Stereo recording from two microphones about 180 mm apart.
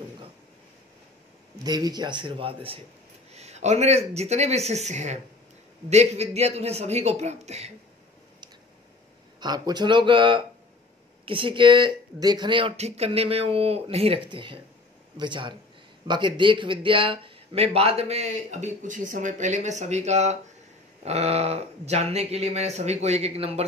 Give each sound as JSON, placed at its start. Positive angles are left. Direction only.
{"t": 1.6, "sound": "speech", "side_deg": -20}
{"t": 9.4, "sound": "speech", "side_deg": -25}